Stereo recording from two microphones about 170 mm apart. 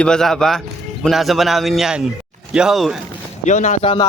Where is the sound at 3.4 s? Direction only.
45° left (ahead or behind).